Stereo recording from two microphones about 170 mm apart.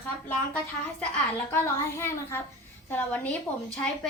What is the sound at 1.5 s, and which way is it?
A child's voice, 15° left (ahead or behind).